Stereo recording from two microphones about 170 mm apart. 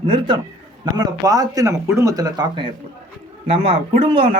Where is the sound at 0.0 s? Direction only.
30° right (ahead or behind).